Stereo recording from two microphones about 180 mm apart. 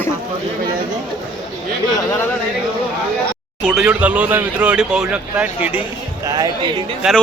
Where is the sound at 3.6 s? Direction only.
5° right (ahead or behind).